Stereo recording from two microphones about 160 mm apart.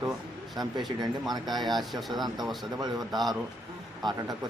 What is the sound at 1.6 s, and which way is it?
Speech, centre (ahead or behind).